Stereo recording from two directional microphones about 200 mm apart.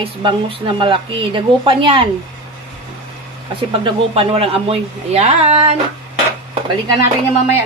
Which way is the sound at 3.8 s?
25° right (ahead or behind).